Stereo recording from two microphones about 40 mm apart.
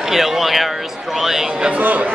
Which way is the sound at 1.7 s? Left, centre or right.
Right.